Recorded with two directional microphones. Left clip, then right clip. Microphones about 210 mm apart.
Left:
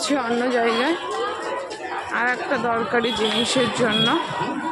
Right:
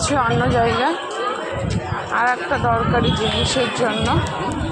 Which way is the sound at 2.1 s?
25° left (ahead or behind).